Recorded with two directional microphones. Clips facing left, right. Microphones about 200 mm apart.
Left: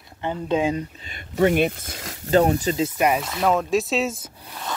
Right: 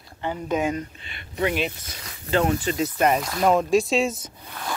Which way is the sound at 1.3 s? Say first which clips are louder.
Left 6 dB; 50° left (ahead or behind).